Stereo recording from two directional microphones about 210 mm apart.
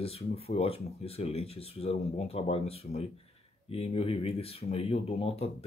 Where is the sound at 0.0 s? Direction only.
30° left (ahead or behind).